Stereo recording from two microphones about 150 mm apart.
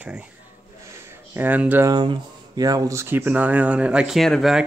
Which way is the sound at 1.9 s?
30° right (ahead or behind).